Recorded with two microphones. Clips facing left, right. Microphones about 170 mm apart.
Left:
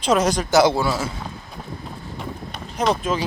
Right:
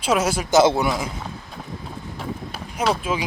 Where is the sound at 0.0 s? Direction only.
10° right (ahead or behind).